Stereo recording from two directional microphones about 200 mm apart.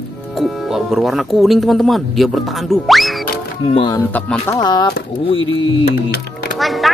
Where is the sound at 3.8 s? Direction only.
20° left (ahead or behind).